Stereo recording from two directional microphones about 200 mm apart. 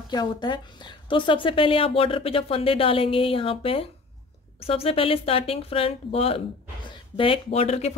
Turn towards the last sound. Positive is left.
turn(degrees=30)  # may be behind; listen again after turning